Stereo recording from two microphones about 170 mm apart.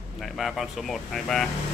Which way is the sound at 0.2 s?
Centre (ahead or behind).